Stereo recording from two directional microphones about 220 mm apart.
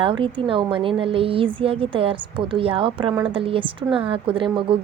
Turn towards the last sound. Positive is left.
turn(degrees=-25)  # may be behind; listen again after turning